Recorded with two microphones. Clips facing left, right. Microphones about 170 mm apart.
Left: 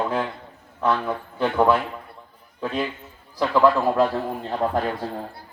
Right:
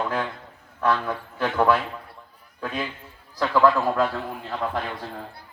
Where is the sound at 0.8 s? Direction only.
20° left (ahead or behind).